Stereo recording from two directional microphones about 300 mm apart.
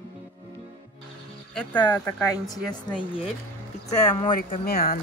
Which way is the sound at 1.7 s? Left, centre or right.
Centre.